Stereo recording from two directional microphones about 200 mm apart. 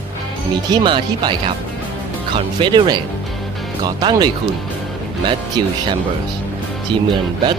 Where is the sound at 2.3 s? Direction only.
25° right (ahead or behind).